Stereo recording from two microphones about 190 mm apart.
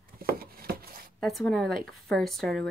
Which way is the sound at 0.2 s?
50° right (ahead or behind).